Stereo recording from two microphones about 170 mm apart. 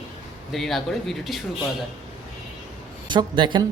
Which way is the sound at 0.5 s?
Centre (ahead or behind).